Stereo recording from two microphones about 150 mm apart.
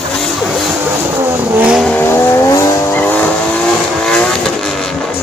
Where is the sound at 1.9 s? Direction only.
15° left (ahead or behind).